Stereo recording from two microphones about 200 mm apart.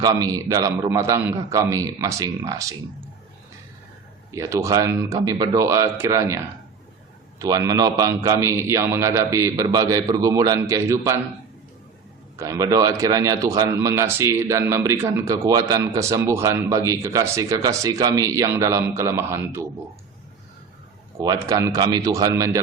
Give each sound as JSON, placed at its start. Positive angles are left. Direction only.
{"t": 0.0, "sound": "a man's voice", "side_deg": -20}
{"t": 4.3, "sound": "a man's voice", "side_deg": -15}
{"t": 12.4, "sound": "a man's voice", "side_deg": -15}
{"t": 21.2, "sound": "a man's voice", "side_deg": -15}